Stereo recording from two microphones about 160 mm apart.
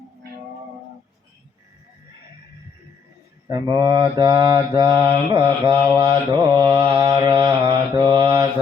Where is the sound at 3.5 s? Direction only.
25° right (ahead or behind).